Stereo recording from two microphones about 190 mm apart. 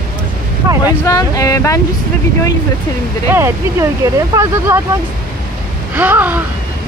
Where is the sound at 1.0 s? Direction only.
20° left (ahead or behind).